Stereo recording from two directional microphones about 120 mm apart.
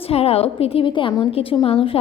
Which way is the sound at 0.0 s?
55° left (ahead or behind).